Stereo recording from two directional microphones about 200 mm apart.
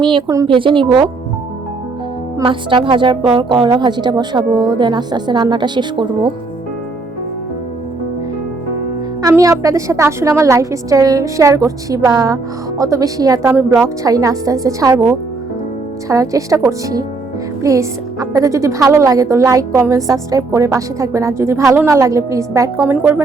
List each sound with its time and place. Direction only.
0.0 s a woman's voice: 25° right (ahead or behind)
2.4 s a woman's voice: 25° right (ahead or behind)
9.2 s a woman's voice: 15° right (ahead or behind)